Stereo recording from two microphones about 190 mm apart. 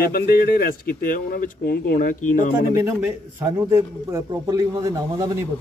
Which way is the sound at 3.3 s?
15° right (ahead or behind).